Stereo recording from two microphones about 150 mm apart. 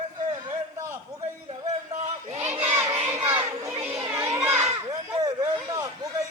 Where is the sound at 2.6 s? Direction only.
15° right (ahead or behind).